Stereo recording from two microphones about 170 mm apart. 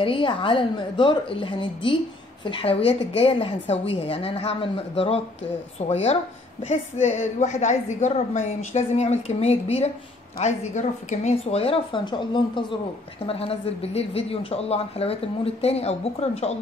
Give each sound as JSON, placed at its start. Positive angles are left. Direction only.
{"t": 0.0, "sound": "a woman's voice", "side_deg": 30}